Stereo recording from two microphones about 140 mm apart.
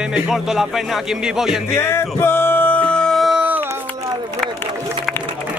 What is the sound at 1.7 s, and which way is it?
Music, 20° left (ahead or behind).